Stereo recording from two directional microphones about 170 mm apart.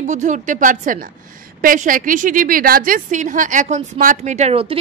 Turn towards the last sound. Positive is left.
turn(degrees=-35)  # may be behind; listen again after turning